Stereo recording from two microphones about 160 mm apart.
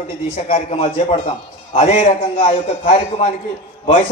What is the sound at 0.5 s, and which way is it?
A man's voice, 45° left (ahead or behind).